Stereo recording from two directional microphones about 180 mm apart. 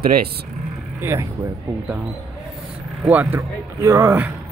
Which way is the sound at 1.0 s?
15° right (ahead or behind).